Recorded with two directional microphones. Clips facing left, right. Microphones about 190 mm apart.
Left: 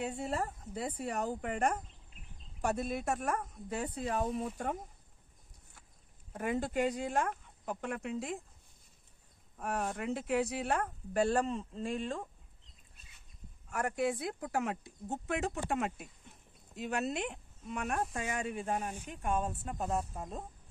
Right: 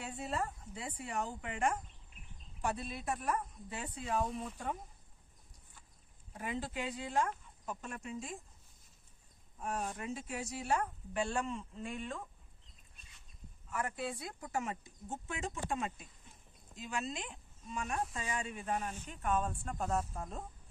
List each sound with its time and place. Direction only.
0.1 s speech: 40° left (ahead or behind)
6.3 s speech: 50° left (ahead or behind)
7.8 s speech: 65° left (ahead or behind)
9.6 s speech: 65° left (ahead or behind); by 12.2 s 35° left (ahead or behind)
13.7 s speech: 45° left (ahead or behind)
14.1 s speech: 60° left (ahead or behind)
18.9 s speech: 15° left (ahead or behind)
19.8 s speech: centre (ahead or behind)